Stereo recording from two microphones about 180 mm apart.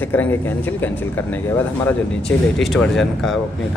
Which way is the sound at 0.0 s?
10° left (ahead or behind).